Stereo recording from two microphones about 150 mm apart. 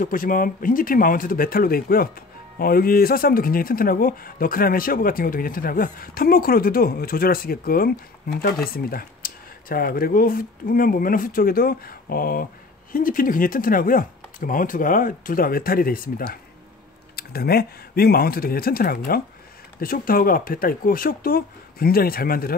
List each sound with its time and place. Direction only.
0.0 s speech: 65° left (ahead or behind)
17.1 s speech: 90° left